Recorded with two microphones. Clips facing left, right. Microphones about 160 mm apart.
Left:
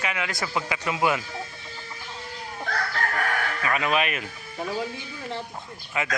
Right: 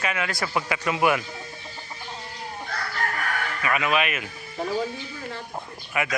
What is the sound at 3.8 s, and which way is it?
Speech, 35° left (ahead or behind).